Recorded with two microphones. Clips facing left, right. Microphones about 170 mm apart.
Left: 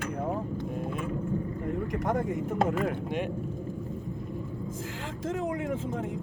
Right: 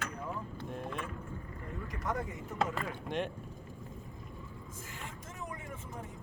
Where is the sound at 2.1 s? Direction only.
50° left (ahead or behind).